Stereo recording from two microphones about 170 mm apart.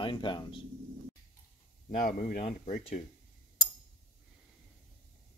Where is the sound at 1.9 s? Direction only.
50° left (ahead or behind).